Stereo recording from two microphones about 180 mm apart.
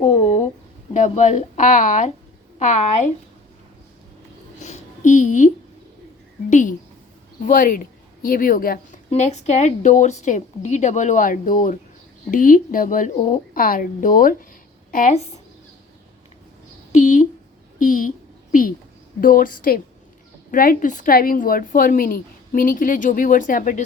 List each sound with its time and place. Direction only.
0.9 s a woman's voice: 40° left (ahead or behind)
4.6 s a sound: 40° left (ahead or behind)
6.5 s a woman's voice: 45° left (ahead or behind)
9.0 s a woman's voice: 40° left (ahead or behind)
13.5 s a woman's voice: 50° left (ahead or behind)
16.9 s a woman's voice: 45° left (ahead or behind)
19.2 s a woman's voice: 50° left (ahead or behind)